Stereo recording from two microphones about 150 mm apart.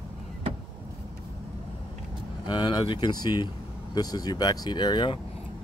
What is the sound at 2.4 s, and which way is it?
Speech, 30° left (ahead or behind).